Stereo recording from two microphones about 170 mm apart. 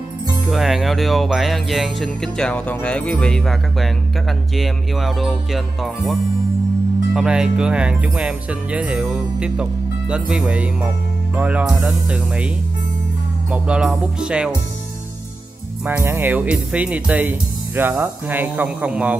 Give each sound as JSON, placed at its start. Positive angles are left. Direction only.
{"t": 0.5, "sound": "speech", "side_deg": 0}
{"t": 7.2, "sound": "speech", "side_deg": -5}
{"t": 13.5, "sound": "speech", "side_deg": -5}
{"t": 15.8, "sound": "speech", "side_deg": -10}